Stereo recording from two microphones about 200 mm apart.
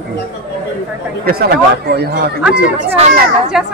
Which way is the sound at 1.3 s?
50° right (ahead or behind).